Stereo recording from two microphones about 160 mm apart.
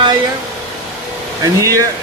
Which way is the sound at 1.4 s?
20° right (ahead or behind).